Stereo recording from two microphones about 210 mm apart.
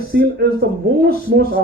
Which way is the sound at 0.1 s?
50° right (ahead or behind).